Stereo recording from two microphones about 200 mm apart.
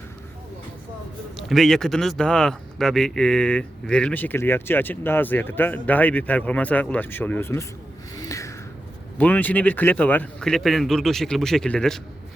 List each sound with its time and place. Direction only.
1.4 s speech: centre (ahead or behind)
8.1 s a sound: 15° left (ahead or behind)
9.1 s speech: 10° left (ahead or behind)